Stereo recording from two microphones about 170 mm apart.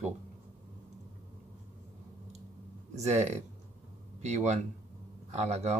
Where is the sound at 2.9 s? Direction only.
40° right (ahead or behind).